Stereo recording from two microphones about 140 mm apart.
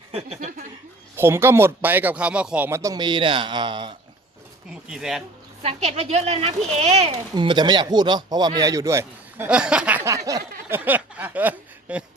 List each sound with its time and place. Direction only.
0.1 s speech: 45° right (ahead or behind)
1.1 s speech: 15° right (ahead or behind); by 3.9 s 35° right (ahead or behind)
4.7 s speech: 5° right (ahead or behind)
5.6 s a woman's voice: 50° right (ahead or behind)
7.3 s speech: 30° right (ahead or behind)
9.5 s speech: 5° right (ahead or behind)
10.1 s speech: 25° right (ahead or behind)
10.7 s speech: 10° right (ahead or behind)